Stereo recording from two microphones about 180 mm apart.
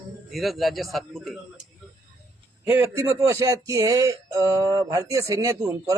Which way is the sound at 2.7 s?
15° right (ahead or behind).